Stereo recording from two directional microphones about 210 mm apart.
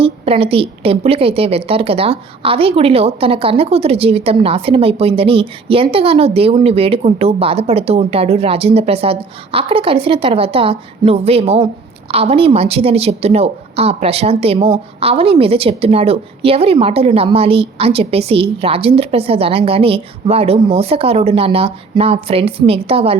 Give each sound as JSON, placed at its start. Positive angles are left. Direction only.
{"t": 0.0, "sound": "a woman's voice", "side_deg": -25}